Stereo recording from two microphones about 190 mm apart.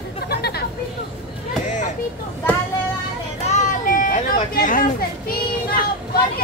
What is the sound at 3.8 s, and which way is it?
Vehicle, 45° left (ahead or behind).